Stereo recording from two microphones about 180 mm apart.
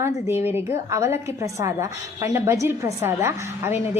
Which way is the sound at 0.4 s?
15° right (ahead or behind).